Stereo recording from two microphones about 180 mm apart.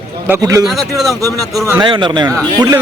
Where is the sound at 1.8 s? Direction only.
25° right (ahead or behind).